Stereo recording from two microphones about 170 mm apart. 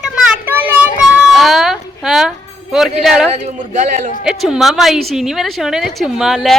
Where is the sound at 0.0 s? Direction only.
10° right (ahead or behind).